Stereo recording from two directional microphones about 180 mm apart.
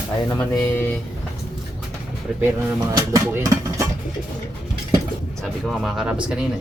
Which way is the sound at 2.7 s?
20° right (ahead or behind).